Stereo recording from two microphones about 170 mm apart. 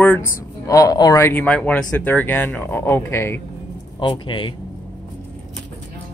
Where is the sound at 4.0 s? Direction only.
30° left (ahead or behind).